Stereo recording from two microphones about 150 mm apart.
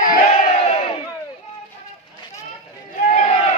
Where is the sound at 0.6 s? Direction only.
45° left (ahead or behind).